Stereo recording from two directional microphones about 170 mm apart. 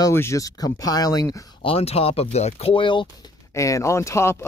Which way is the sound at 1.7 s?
35° left (ahead or behind).